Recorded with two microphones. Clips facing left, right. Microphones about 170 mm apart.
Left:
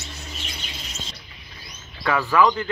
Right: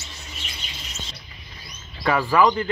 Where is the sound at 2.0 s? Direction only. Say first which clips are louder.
Right 1 dB; 15° right (ahead or behind).